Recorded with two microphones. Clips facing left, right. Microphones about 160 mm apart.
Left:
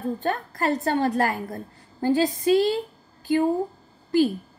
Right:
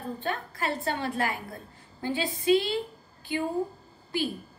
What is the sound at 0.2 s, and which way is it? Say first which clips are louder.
A woman's voice: left 6 dB; 45° left (ahead or behind).